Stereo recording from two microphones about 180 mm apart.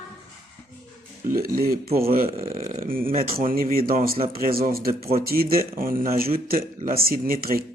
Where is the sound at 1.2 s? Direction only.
50° right (ahead or behind).